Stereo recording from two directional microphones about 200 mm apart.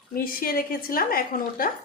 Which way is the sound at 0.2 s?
45° left (ahead or behind).